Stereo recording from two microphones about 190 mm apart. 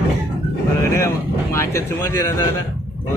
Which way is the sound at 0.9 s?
15° left (ahead or behind).